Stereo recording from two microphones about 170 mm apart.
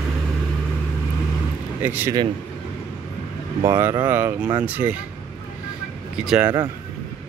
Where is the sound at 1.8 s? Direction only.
10° right (ahead or behind).